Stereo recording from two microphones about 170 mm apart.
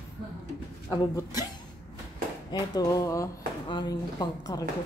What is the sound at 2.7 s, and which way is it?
Speech, 20° left (ahead or behind).